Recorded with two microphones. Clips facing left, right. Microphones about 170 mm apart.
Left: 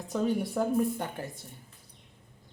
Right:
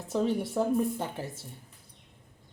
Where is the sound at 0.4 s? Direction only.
Centre (ahead or behind).